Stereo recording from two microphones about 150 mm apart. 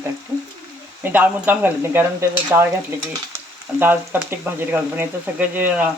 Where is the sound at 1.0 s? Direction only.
10° right (ahead or behind).